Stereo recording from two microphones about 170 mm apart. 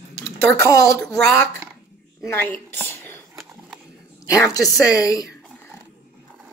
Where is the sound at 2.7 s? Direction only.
10° left (ahead or behind).